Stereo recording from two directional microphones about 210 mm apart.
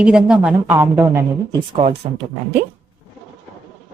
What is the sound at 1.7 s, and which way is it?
Speech, 30° right (ahead or behind).